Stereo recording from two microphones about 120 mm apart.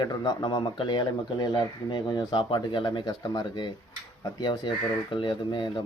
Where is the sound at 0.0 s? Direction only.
35° left (ahead or behind).